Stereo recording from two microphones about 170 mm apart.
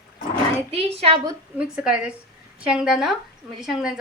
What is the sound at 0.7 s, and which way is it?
Speech, 35° right (ahead or behind).